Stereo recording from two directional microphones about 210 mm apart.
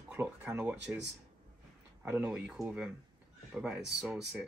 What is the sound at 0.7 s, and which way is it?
Speech, 55° right (ahead or behind).